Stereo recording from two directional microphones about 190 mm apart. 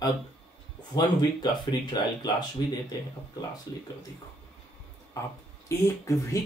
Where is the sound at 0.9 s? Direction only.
20° left (ahead or behind).